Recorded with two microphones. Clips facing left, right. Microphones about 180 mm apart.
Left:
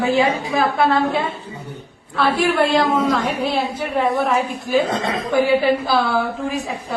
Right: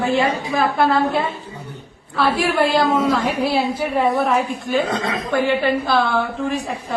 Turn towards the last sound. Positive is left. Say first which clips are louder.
# right 1 dB
turn(degrees=0)  # may be behind; listen again after turning